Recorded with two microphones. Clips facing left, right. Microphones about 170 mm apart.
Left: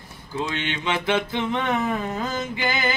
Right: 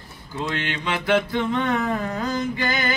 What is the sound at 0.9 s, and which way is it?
Mantra, 20° left (ahead or behind).